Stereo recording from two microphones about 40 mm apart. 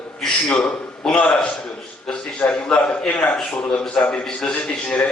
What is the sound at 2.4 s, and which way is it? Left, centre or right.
A man's voice, left.